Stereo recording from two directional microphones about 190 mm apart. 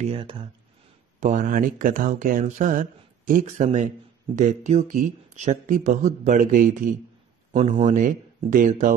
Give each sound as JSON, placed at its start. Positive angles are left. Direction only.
{"t": 0.0, "sound": "speech", "side_deg": -30}
{"t": 1.2, "sound": "speech", "side_deg": -45}